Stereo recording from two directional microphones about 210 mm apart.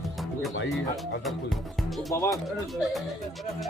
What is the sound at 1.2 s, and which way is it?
Speech, centre (ahead or behind).